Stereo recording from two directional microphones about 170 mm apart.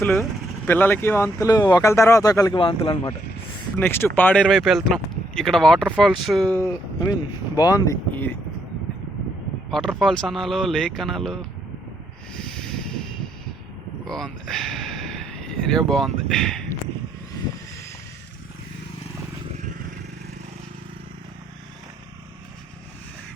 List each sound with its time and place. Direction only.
0.0 s speech: 15° left (ahead or behind)
2.6 s speech: 30° left (ahead or behind)
3.8 s speech: 15° left (ahead or behind)
6.6 s speech: 20° left (ahead or behind)
8.1 s speech: 10° left (ahead or behind)
9.6 s speech: 5° left (ahead or behind)
14.1 s speech: centre (ahead or behind)